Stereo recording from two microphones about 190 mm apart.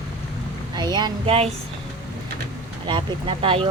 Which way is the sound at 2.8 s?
25° right (ahead or behind).